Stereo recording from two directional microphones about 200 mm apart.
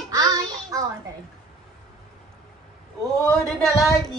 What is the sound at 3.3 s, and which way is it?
Speech, centre (ahead or behind).